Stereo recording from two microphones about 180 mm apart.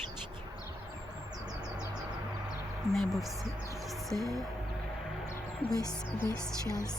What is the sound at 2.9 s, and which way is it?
Speech, centre (ahead or behind).